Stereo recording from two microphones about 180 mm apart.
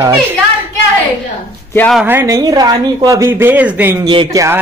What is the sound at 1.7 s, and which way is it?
Speech, 10° left (ahead or behind).